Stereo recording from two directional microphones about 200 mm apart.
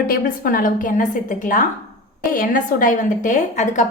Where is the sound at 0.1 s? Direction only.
45° left (ahead or behind).